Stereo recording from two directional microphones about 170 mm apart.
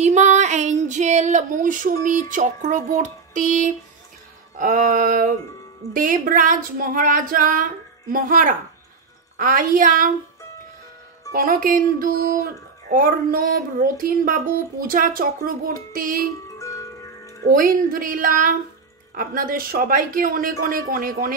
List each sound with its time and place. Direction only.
0.0 s female singing: 45° right (ahead or behind)
11.3 s speech: 55° right (ahead or behind)
16.5 s music: 20° left (ahead or behind)
17.4 s speech: 55° right (ahead or behind)